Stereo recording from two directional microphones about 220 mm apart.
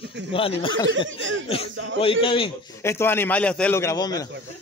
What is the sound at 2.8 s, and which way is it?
A man's voice, 10° left (ahead or behind).